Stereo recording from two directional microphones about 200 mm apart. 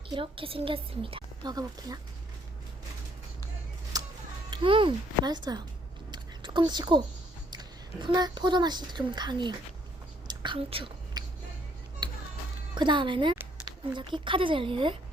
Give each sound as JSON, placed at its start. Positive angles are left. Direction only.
{"t": 0.1, "sound": "a woman's voice", "side_deg": -25}
{"t": 3.9, "sound": "music", "side_deg": -20}
{"t": 4.5, "sound": "a woman's voice", "side_deg": -25}
{"t": 6.1, "sound": "a sound", "side_deg": -20}
{"t": 7.5, "sound": "a woman's voice", "side_deg": -20}
{"t": 10.2, "sound": "whispering", "side_deg": -25}
{"t": 12.0, "sound": "music", "side_deg": -20}
{"t": 12.7, "sound": "speech", "side_deg": -25}